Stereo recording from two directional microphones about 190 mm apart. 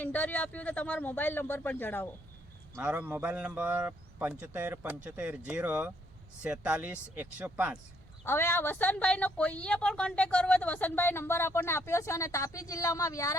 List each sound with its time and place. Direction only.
0.0 s speech: 10° left (ahead or behind)
2.7 s a man's voice: 10° right (ahead or behind)
8.2 s speech: 10° left (ahead or behind)